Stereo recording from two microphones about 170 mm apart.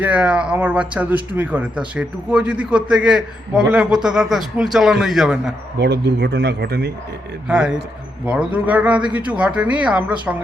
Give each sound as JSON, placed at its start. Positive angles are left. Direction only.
{"t": 0.0, "sound": "a man's voice", "side_deg": -5}
{"t": 5.7, "sound": "speech", "side_deg": -80}
{"t": 7.4, "sound": "a man's voice", "side_deg": -5}